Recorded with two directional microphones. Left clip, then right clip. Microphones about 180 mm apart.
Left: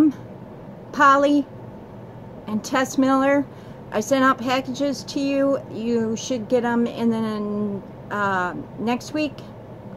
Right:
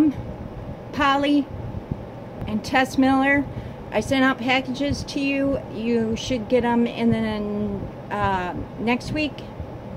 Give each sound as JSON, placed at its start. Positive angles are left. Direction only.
{"t": 0.9, "sound": "speech", "side_deg": 0}
{"t": 2.4, "sound": "speech", "side_deg": 0}